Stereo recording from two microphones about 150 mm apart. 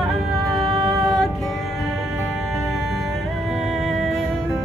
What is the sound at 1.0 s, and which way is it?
Music, centre (ahead or behind).